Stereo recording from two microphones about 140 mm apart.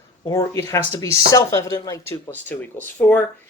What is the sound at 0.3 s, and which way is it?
Speech, 25° left (ahead or behind).